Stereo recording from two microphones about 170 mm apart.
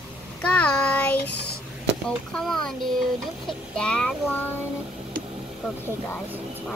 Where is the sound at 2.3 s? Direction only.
5° left (ahead or behind).